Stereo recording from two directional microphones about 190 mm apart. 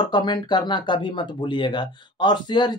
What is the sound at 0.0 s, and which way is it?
Speech, 25° left (ahead or behind).